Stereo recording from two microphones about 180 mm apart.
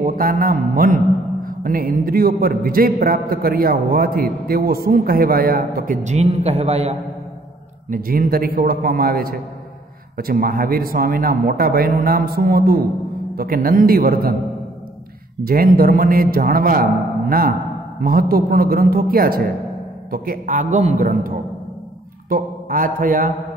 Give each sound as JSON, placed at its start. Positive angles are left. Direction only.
{"t": 0.0, "sound": "a man's voice", "side_deg": -50}
{"t": 7.9, "sound": "a man's voice", "side_deg": -55}
{"t": 15.4, "sound": "a man's voice", "side_deg": -55}
{"t": 22.3, "sound": "mantra", "side_deg": -50}